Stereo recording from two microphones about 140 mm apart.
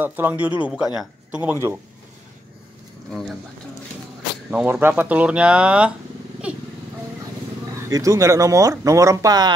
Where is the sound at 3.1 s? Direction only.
5° left (ahead or behind).